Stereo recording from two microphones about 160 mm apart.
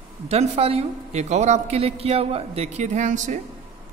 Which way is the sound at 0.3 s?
40° right (ahead or behind).